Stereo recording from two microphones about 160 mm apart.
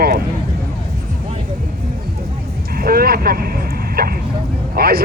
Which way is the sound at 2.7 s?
70° right (ahead or behind).